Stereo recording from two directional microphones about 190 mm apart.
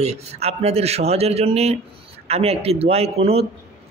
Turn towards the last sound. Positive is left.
turn(degrees=-30)  # may be behind; listen again after turning